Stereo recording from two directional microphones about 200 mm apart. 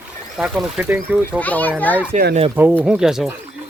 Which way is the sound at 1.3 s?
10° left (ahead or behind).